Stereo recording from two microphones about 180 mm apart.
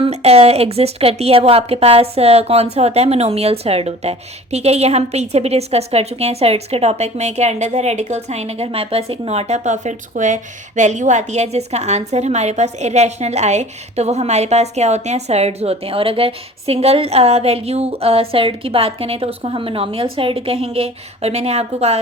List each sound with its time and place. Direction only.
0.1 s a woman's voice: 35° right (ahead or behind)